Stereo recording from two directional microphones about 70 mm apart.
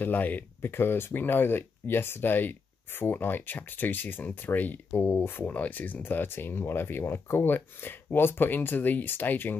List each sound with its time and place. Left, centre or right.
0.0 s speech: left